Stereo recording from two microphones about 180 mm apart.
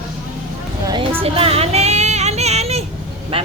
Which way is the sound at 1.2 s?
35° right (ahead or behind).